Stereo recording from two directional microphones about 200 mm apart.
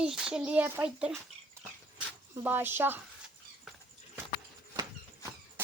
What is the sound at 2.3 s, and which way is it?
Speech, 10° right (ahead or behind).